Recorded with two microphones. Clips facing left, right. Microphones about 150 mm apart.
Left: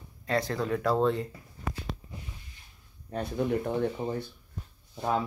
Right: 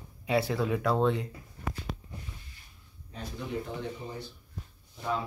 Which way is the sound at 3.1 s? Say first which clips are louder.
Left 8 dB; 60° left (ahead or behind).